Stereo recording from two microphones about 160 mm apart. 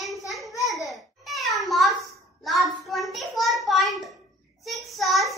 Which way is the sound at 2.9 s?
Centre (ahead or behind).